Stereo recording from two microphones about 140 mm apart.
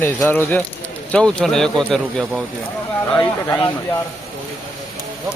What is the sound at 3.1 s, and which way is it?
Speech, 30° left (ahead or behind).